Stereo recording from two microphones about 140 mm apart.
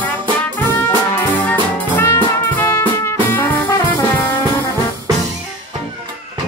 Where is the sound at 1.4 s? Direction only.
15° left (ahead or behind).